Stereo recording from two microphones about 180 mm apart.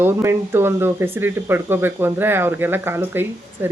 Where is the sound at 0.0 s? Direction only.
15° right (ahead or behind).